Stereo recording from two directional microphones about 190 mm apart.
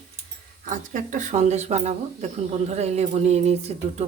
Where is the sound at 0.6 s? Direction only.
40° right (ahead or behind).